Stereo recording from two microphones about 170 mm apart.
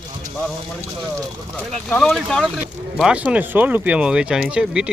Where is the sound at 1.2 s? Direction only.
5° left (ahead or behind).